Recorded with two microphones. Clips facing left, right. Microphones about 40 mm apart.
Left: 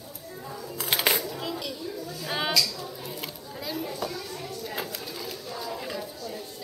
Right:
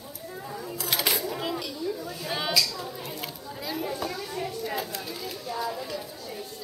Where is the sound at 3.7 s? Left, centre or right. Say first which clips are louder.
Right 1 dB; centre.